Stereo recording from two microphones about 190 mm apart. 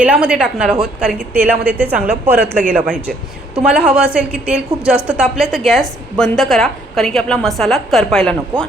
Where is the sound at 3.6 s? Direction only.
5° right (ahead or behind).